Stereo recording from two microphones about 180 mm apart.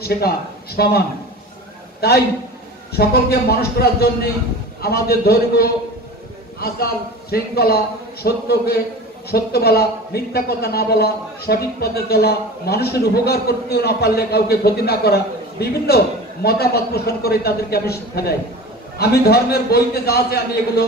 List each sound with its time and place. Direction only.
0.0 s a man's voice: 60° left (ahead or behind)
2.0 s a man's voice: 60° left (ahead or behind)